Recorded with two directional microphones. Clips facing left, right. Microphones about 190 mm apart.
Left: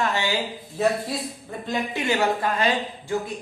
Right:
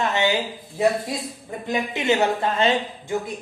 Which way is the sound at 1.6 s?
20° right (ahead or behind).